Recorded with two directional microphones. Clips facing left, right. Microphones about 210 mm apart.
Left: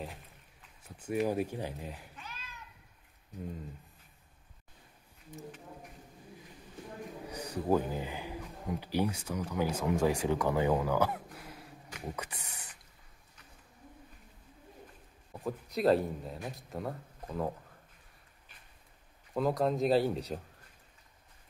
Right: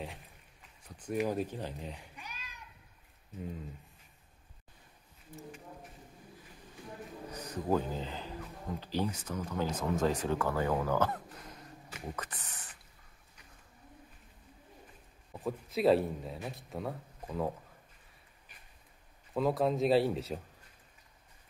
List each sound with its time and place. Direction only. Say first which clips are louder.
0.8 s speech: left 2 dB; 10° left (ahead or behind)
2.1 s a sound: left 1 dB; 15° right (ahead or behind)
7.2 s speech: left 2 dB; 10° left (ahead or behind)
15.3 s speech: right 1 dB; centre (ahead or behind)
19.3 s speech: even; centre (ahead or behind)